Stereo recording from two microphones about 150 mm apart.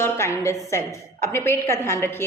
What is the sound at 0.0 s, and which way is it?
A woman's voice, 20° left (ahead or behind).